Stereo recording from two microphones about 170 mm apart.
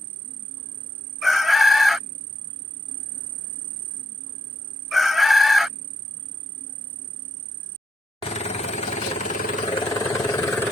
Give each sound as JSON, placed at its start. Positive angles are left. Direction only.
{"t": 1.2, "sound": "chicken", "side_deg": 0}
{"t": 4.9, "sound": "chicken", "side_deg": 0}
{"t": 8.2, "sound": "vehicle", "side_deg": 35}
{"t": 9.9, "sound": "vehicle", "side_deg": 20}